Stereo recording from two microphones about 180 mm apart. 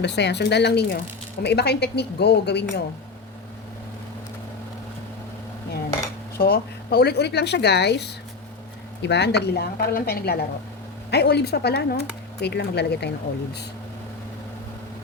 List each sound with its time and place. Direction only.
0.0 s speech: 70° left (ahead or behind)
6.3 s a woman's voice: 60° left (ahead or behind)